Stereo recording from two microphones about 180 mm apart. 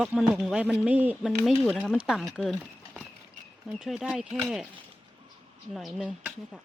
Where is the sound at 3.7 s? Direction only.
5° right (ahead or behind).